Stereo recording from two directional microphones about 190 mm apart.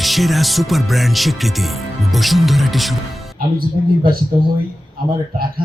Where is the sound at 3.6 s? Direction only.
50° right (ahead or behind).